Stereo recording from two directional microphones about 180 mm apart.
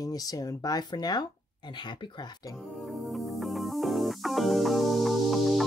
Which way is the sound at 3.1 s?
Centre (ahead or behind).